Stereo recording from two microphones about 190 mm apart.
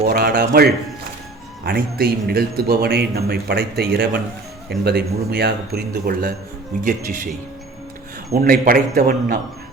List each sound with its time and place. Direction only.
0.0 s a man's voice: 50° right (ahead or behind)
8.3 s a man's voice: 50° right (ahead or behind)